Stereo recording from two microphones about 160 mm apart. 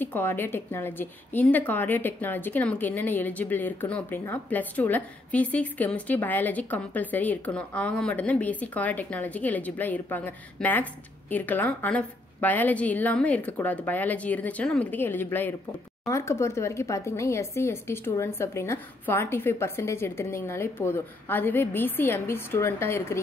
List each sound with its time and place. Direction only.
0.0 s a woman's voice: 15° left (ahead or behind)